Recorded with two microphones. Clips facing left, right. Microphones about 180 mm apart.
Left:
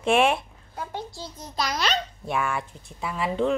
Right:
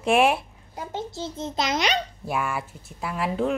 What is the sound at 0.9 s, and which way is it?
A child's voice, 25° right (ahead or behind).